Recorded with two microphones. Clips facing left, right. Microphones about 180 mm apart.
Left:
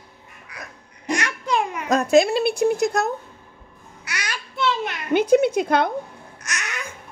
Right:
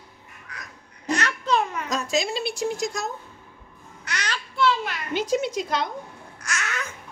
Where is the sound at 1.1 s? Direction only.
15° left (ahead or behind).